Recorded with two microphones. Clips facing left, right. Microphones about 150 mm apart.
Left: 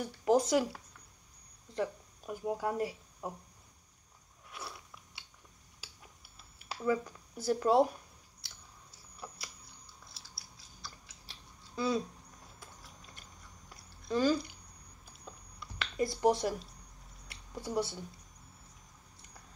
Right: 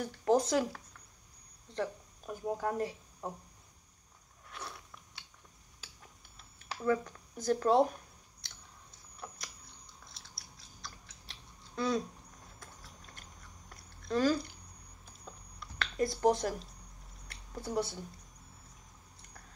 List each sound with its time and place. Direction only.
0.0 s speech: 10° left (ahead or behind)
4.5 s biting: 5° left (ahead or behind)
6.9 s speech: 10° left (ahead or behind)
9.2 s chewing: 5° left (ahead or behind)
13.7 s a sound: centre (ahead or behind)